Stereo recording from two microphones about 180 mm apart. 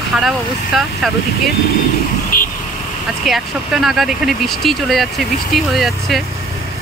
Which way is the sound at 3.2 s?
Centre (ahead or behind).